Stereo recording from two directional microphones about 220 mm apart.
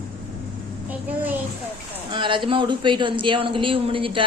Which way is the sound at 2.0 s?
20° right (ahead or behind).